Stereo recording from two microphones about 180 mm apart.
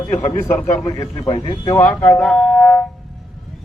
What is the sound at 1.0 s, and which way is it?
Speech, 25° left (ahead or behind).